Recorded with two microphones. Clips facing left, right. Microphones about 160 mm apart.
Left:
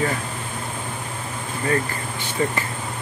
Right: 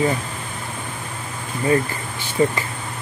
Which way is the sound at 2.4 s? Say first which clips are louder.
Right 5 dB; 20° right (ahead or behind).